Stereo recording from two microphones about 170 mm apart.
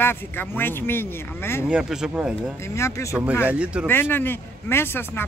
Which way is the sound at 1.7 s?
5° right (ahead or behind).